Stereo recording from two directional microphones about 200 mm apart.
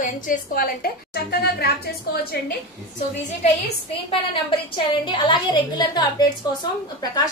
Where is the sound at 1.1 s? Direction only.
55° left (ahead or behind).